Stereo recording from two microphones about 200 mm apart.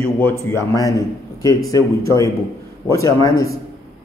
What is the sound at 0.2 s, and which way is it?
A man's voice, 10° left (ahead or behind).